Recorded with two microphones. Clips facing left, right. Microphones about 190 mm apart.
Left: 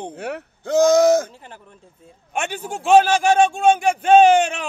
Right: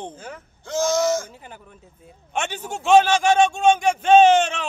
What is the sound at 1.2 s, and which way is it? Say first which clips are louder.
Speech: even; 5° right (ahead or behind).